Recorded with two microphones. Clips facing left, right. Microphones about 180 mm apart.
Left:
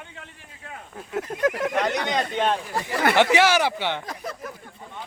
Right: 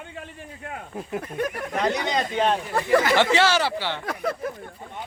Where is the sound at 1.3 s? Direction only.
90° left.